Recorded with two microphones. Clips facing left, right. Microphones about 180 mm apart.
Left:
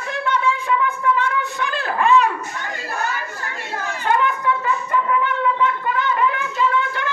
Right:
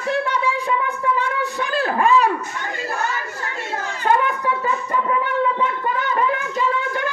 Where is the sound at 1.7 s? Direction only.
35° right (ahead or behind).